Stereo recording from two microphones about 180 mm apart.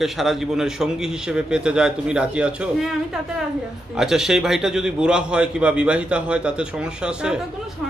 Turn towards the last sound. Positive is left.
turn(degrees=-5)  # may be behind; listen again after turning